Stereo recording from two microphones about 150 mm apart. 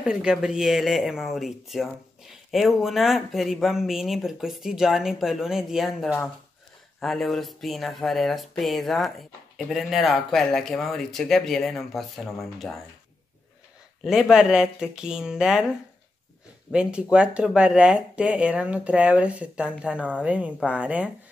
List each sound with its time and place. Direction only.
0.0 s speech: 5° right (ahead or behind)
14.0 s speech: 5° right (ahead or behind)
16.7 s speech: 5° right (ahead or behind)